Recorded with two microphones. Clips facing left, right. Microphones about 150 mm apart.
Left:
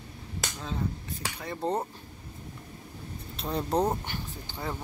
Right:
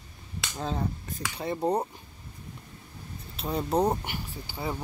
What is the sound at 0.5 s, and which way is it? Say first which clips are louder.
Speech: right 5 dB; 45° right (ahead or behind).